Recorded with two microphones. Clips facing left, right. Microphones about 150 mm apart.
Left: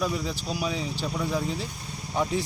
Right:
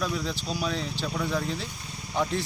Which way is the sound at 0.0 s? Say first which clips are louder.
Left 1 dB; 5° left (ahead or behind).